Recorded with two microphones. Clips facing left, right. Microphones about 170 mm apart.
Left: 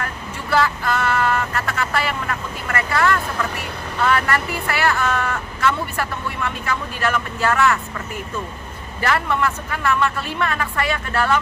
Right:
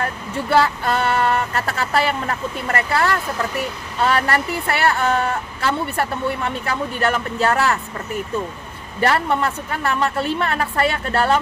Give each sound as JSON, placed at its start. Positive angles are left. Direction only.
{"t": 0.0, "sound": "a woman's voice", "side_deg": -30}
{"t": 9.0, "sound": "a woman's voice", "side_deg": -30}